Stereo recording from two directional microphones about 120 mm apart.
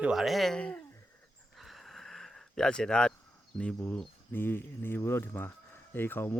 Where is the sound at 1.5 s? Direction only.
Centre (ahead or behind).